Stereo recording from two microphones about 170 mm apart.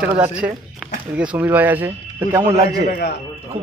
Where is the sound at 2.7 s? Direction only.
75° left (ahead or behind).